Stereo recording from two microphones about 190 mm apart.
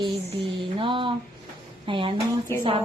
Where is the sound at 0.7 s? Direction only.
25° right (ahead or behind).